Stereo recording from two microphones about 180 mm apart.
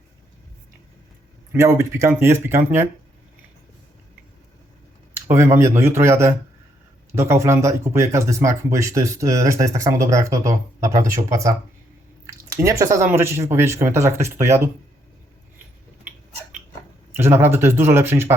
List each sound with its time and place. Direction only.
1.5 s speech: 15° right (ahead or behind)
5.1 s speech: 15° right (ahead or behind)
17.2 s speech: 15° right (ahead or behind)